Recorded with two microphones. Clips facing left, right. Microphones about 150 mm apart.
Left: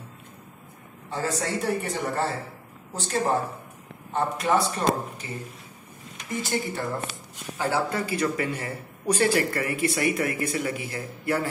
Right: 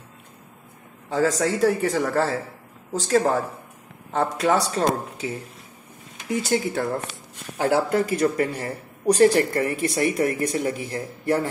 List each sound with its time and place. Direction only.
1.1 s speech: 90° right
7.7 s speech: 55° right (ahead or behind)
8.2 s speech: 40° right (ahead or behind)